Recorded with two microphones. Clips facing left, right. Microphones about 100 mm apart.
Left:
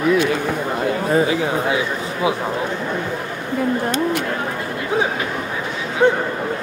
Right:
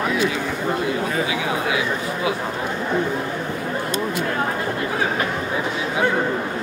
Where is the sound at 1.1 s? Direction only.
35° left (ahead or behind).